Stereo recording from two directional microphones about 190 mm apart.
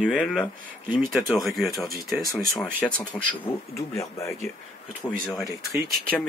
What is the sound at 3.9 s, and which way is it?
Speech, 15° left (ahead or behind).